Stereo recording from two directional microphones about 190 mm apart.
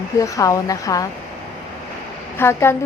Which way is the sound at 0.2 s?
15° left (ahead or behind).